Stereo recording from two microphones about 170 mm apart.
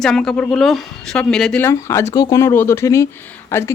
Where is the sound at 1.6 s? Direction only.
15° left (ahead or behind).